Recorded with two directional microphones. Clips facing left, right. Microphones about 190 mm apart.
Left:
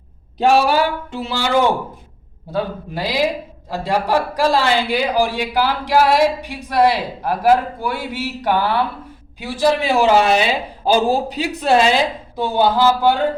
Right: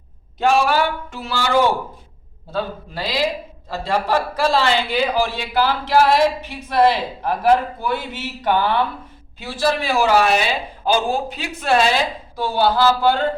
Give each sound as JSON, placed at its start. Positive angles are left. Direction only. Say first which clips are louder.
{"t": 0.3, "sound": "a man's voice", "louder": "left 3 dB", "side_deg": 35}
{"t": 1.1, "sound": "a man's voice", "louder": "even", "side_deg": 20}
{"t": 10.9, "sound": "a man's voice", "louder": "left 5 dB", "side_deg": 35}
{"t": 11.7, "sound": "a man's voice", "louder": "left 2 dB", "side_deg": 20}